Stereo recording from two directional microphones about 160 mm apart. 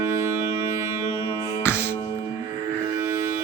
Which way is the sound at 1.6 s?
15° left (ahead or behind).